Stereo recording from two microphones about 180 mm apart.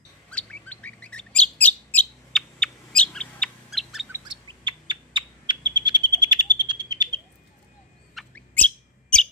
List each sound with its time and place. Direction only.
0.3 s bird: 5° left (ahead or behind)
4.3 s bird: 25° right (ahead or behind)
8.1 s bird: 5° left (ahead or behind)